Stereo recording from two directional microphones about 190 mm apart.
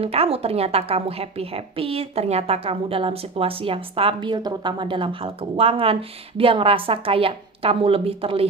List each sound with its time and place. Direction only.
0.0 s a woman's voice: 30° right (ahead or behind)